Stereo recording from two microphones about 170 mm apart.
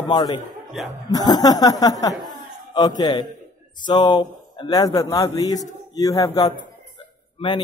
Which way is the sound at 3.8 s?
25° left (ahead or behind).